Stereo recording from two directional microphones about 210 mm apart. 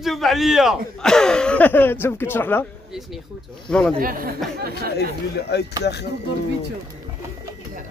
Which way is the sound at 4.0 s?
45° right (ahead or behind).